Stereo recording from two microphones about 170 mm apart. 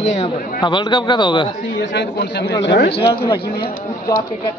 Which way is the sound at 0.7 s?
30° left (ahead or behind).